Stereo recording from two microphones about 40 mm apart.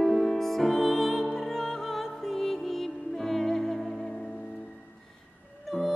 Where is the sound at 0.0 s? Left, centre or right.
Centre.